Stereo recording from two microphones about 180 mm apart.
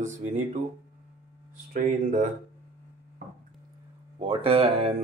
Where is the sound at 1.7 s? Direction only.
50° right (ahead or behind).